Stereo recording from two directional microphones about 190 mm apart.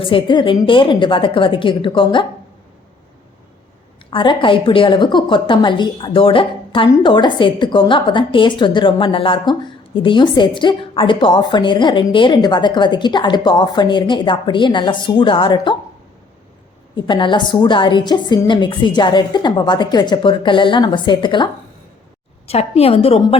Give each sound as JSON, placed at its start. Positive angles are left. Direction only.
{"t": 0.0, "sound": "a woman's voice", "side_deg": 30}
{"t": 4.1, "sound": "a woman's voice", "side_deg": 25}
{"t": 17.1, "sound": "a woman's voice", "side_deg": 25}